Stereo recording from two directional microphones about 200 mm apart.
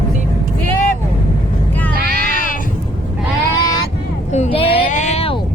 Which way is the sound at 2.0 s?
50° right (ahead or behind).